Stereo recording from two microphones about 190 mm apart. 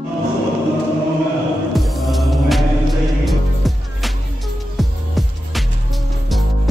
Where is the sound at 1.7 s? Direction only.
Centre (ahead or behind).